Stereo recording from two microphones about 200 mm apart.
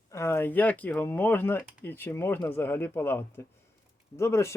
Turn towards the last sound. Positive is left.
turn(degrees=15)  # may be behind; listen again after turning